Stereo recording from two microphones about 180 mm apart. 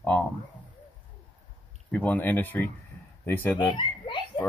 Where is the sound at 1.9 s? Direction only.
10° left (ahead or behind).